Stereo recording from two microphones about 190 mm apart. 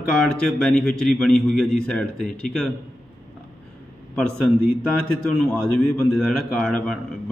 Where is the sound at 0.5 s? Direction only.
5° left (ahead or behind).